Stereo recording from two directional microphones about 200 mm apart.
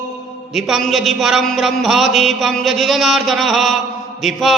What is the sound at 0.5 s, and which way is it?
A man's voice, centre (ahead or behind).